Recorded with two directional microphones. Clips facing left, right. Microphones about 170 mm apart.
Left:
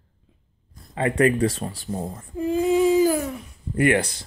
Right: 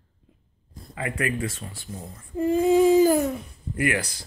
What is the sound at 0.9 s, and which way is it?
Speech, 30° left (ahead or behind).